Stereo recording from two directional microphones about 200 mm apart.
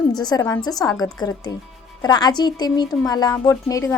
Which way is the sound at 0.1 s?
20° left (ahead or behind).